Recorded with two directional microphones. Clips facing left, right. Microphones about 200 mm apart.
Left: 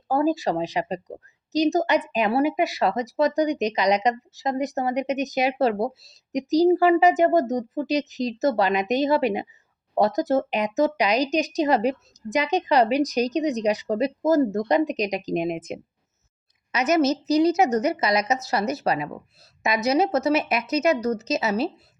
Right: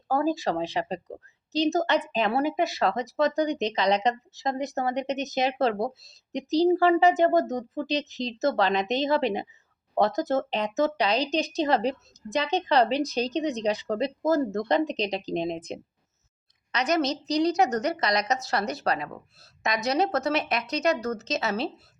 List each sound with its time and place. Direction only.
0.1 s speech: 15° left (ahead or behind)
16.7 s a woman's voice: 5° left (ahead or behind)
18.9 s speech: 15° left (ahead or behind)
19.6 s a woman's voice: 5° left (ahead or behind)